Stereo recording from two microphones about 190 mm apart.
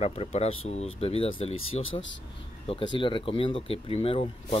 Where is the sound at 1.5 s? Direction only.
90° left.